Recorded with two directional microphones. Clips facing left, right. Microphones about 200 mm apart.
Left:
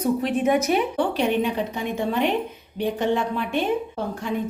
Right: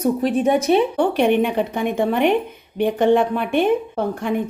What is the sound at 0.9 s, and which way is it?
A woman's voice, 60° right (ahead or behind).